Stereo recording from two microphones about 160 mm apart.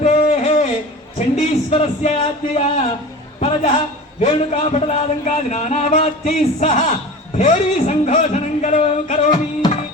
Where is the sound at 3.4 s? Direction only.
40° left (ahead or behind).